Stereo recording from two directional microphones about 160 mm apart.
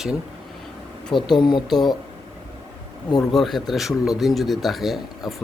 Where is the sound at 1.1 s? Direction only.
30° left (ahead or behind).